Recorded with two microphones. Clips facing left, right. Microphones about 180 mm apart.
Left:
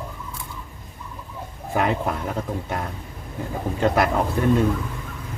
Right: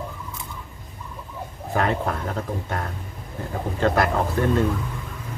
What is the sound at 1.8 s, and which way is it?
Speech, 10° left (ahead or behind).